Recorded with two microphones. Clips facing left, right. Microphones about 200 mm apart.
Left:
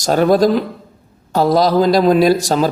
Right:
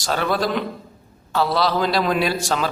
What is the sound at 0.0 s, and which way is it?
A man's voice, 45° left (ahead or behind).